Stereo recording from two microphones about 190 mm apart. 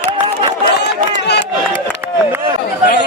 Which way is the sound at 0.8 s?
60° left (ahead or behind).